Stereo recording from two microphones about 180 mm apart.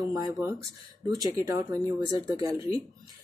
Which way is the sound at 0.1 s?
20° right (ahead or behind).